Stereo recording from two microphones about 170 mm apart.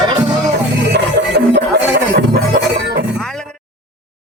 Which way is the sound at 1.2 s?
90° right.